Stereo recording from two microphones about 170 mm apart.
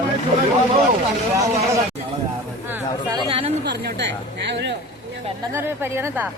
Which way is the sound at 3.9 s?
90° right.